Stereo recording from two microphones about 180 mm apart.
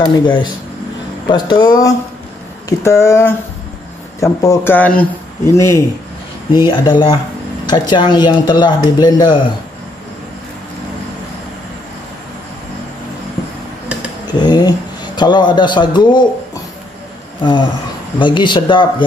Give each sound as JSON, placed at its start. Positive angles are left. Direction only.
{"t": 0.0, "sound": "a man's voice", "side_deg": 25}
{"t": 14.2, "sound": "speech", "side_deg": 25}
{"t": 17.4, "sound": "speech", "side_deg": 25}